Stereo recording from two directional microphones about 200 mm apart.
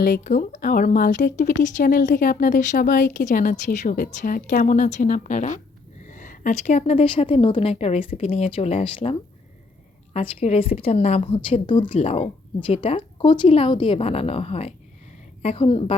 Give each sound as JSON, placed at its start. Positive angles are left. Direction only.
{"t": 0.0, "sound": "a woman's voice", "side_deg": 45}